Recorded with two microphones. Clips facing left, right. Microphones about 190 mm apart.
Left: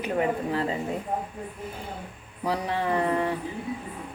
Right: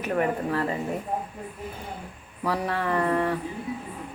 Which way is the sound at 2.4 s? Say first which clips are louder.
Even; 15° left (ahead or behind).